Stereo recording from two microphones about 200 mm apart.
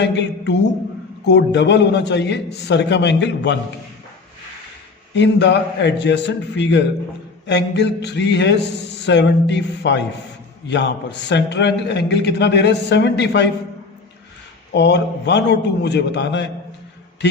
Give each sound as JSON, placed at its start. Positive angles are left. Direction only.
{"t": 0.0, "sound": "a man's voice", "side_deg": 60}
{"t": 5.1, "sound": "a man's voice", "side_deg": 60}
{"t": 14.7, "sound": "a man's voice", "side_deg": 60}